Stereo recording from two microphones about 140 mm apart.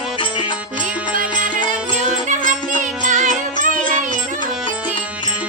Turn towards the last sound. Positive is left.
turn(degrees=-65)  # may be behind; listen again after turning